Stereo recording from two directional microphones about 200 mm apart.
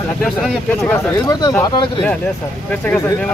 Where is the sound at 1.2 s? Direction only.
15° left (ahead or behind).